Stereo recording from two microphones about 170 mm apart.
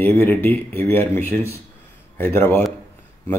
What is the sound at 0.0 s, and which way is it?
Speech, 10° left (ahead or behind).